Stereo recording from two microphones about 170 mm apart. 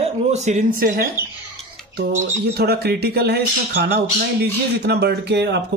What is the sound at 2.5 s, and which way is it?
Speech, 70° right (ahead or behind).